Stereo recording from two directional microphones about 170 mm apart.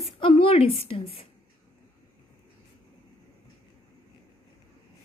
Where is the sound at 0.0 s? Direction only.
35° left (ahead or behind).